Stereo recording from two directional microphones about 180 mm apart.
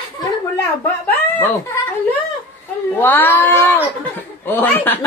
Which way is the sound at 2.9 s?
10° left (ahead or behind).